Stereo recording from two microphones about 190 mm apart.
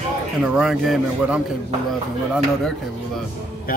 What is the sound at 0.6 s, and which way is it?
Speech, 5° right (ahead or behind).